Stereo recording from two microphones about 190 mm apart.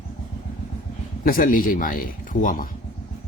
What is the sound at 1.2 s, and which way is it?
A man's voice, 50° left (ahead or behind).